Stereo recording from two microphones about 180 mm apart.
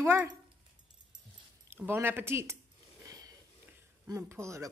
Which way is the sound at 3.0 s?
20° right (ahead or behind).